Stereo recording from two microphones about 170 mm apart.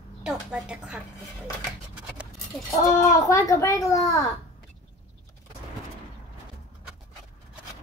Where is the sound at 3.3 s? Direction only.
20° left (ahead or behind).